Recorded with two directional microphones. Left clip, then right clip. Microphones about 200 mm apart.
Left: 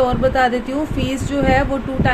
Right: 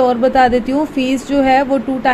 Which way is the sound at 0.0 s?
15° right (ahead or behind).